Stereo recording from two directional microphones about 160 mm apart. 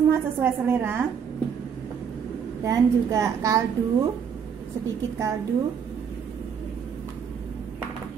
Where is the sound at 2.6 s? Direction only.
20° right (ahead or behind).